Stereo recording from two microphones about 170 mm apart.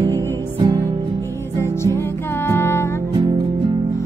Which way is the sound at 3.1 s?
30° right (ahead or behind).